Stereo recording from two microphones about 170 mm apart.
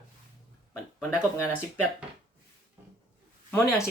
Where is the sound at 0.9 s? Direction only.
5° right (ahead or behind).